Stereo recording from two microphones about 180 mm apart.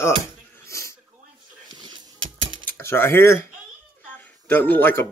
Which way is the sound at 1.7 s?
25° right (ahead or behind).